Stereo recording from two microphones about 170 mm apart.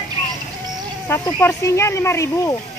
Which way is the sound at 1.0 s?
10° left (ahead or behind).